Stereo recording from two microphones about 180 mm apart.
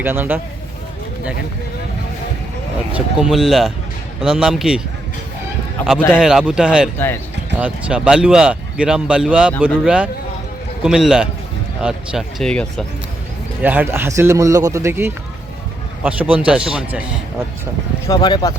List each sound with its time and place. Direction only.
0.0 s a man's voice: 10° right (ahead or behind)
2.9 s speech: 5° right (ahead or behind)
5.8 s a man's voice: 10° left (ahead or behind)
6.1 s speech: 5° right (ahead or behind)
13.6 s a man's voice: 10° right (ahead or behind)
18.0 s speech: 20° left (ahead or behind)